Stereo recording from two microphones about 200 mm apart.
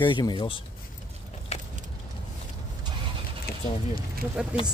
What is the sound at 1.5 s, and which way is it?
Keys jangling, 35° left (ahead or behind).